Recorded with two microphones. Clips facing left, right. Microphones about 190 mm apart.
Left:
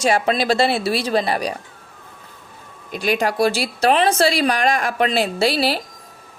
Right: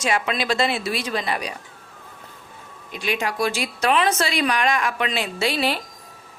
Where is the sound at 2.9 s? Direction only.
40° left (ahead or behind).